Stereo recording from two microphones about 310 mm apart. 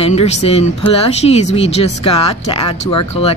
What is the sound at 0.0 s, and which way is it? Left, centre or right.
Speech, centre.